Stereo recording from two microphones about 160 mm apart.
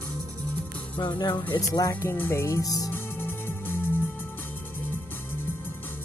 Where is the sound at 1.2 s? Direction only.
25° left (ahead or behind).